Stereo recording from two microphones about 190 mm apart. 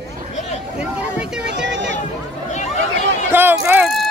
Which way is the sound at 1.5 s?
70° right (ahead or behind).